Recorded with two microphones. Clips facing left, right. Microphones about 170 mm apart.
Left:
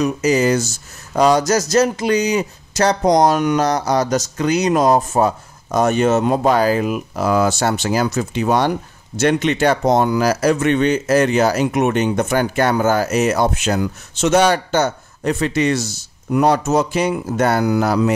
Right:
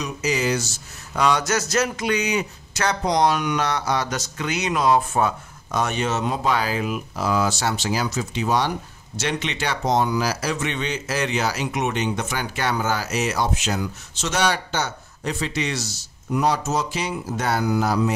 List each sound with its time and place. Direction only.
0.0 s speech: 45° left (ahead or behind); by 18.1 s 70° left (ahead or behind)